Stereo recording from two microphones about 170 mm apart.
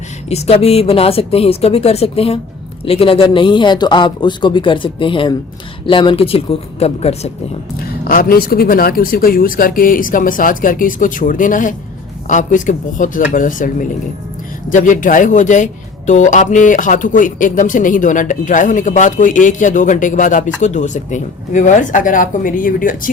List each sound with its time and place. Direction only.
0.3 s speech: 40° left (ahead or behind)
8.0 s a man's voice: 60° left (ahead or behind)